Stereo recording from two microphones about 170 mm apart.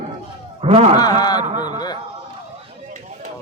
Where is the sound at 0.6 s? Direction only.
40° right (ahead or behind).